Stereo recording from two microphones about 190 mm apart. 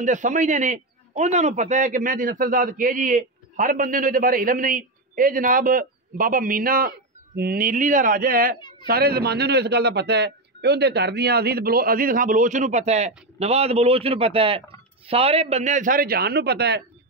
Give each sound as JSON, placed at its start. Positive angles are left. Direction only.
{"t": 0.0, "sound": "a man's voice", "side_deg": -40}